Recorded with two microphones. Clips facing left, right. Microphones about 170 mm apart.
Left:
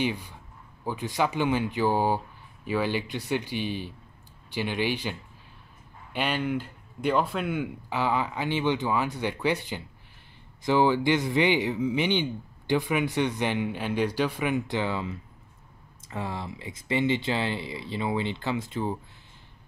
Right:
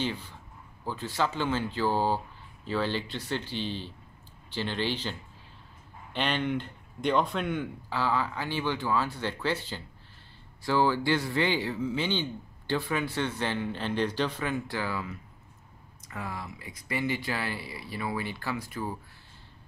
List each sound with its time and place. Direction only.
0.0 s speech: 15° left (ahead or behind)
6.1 s speech: 5° left (ahead or behind); by 18.9 s 25° left (ahead or behind)